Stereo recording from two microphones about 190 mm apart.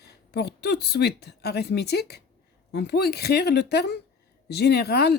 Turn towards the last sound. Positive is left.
turn(degrees=60)  # may be behind; listen again after turning